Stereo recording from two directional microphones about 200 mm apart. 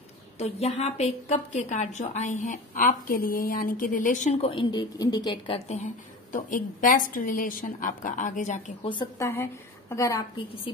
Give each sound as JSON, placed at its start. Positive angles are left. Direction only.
{"t": 0.4, "sound": "a woman's voice", "side_deg": 30}
{"t": 6.3, "sound": "a woman's voice", "side_deg": 40}
{"t": 8.8, "sound": "a woman's voice", "side_deg": 20}